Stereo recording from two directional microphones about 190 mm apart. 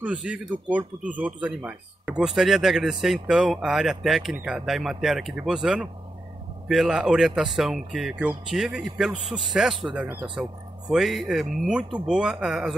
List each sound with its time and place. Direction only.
0.0 s speech: 5° right (ahead or behind)